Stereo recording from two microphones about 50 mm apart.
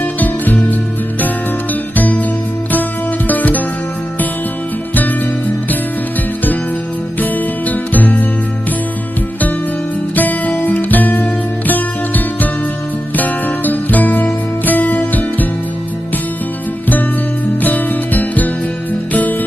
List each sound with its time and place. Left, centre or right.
0.0 s music: left
2.0 s music: left
3.2 s music: left
4.9 s music: left
7.2 s music: left
10.2 s music: left
17.6 s music: left